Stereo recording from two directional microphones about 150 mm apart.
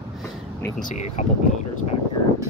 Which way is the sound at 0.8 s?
50° left (ahead or behind).